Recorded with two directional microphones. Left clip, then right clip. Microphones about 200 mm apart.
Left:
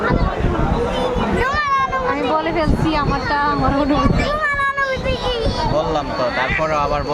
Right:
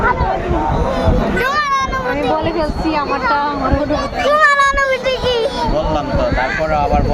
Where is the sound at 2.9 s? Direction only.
20° left (ahead or behind).